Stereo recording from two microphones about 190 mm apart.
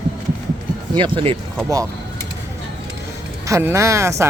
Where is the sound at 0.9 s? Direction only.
25° right (ahead or behind).